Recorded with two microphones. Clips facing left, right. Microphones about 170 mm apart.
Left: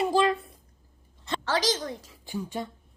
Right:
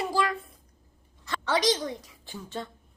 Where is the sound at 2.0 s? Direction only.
15° left (ahead or behind).